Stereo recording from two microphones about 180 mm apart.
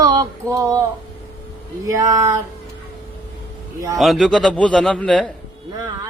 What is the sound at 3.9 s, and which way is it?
A man's voice, centre (ahead or behind).